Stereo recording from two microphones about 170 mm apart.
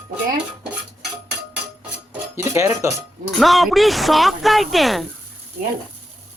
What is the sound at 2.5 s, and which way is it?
Speech, 15° right (ahead or behind).